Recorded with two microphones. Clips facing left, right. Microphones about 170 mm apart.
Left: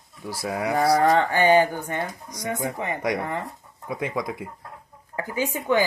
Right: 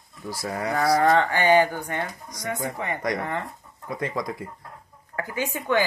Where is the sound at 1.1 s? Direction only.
15° left (ahead or behind).